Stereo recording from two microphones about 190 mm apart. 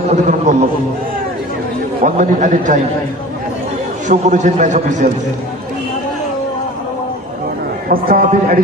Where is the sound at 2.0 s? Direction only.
40° right (ahead or behind).